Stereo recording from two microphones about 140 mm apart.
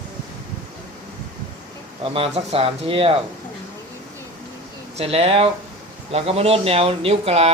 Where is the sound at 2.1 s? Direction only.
45° right (ahead or behind).